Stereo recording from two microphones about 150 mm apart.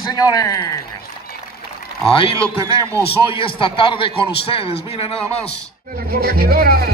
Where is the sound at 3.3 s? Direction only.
35° left (ahead or behind).